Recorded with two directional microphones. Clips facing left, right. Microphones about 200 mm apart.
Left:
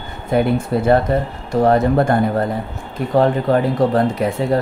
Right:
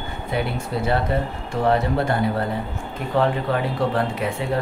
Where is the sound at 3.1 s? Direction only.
40° left (ahead or behind).